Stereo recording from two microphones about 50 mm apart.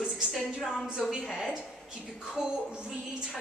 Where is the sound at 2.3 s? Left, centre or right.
Centre.